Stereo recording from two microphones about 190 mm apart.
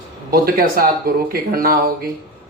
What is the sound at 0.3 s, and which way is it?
Speech, 50° right (ahead or behind).